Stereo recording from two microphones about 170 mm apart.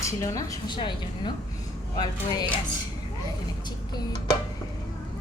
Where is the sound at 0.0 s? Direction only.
20° left (ahead or behind).